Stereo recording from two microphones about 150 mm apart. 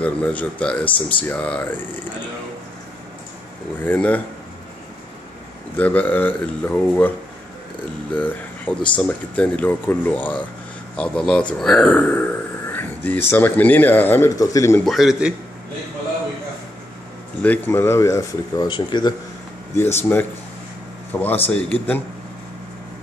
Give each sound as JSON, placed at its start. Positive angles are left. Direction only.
{"t": 0.0, "sound": "speech", "side_deg": 10}
{"t": 3.8, "sound": "speech", "side_deg": 10}
{"t": 5.8, "sound": "speech", "side_deg": 10}
{"t": 11.5, "sound": "a sound", "side_deg": 5}
{"t": 13.3, "sound": "speech", "side_deg": 10}
{"t": 14.9, "sound": "a man's voice", "side_deg": 0}
{"t": 17.4, "sound": "speech", "side_deg": 10}
{"t": 19.7, "sound": "speech", "side_deg": 15}
{"t": 21.1, "sound": "speech", "side_deg": 10}